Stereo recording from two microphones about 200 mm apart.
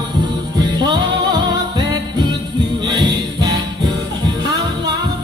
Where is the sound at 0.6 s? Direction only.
20° right (ahead or behind).